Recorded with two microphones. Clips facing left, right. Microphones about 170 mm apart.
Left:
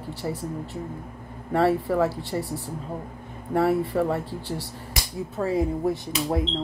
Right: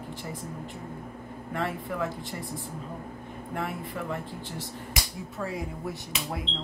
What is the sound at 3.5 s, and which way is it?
Speech, 35° left (ahead or behind).